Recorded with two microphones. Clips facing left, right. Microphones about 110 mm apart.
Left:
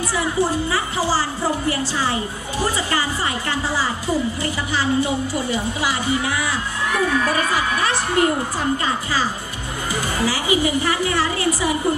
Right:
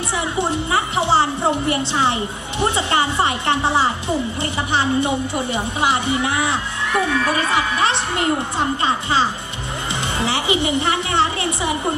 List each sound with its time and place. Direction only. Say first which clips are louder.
0.5 s a woman's voice: right 2 dB; 25° right (ahead or behind)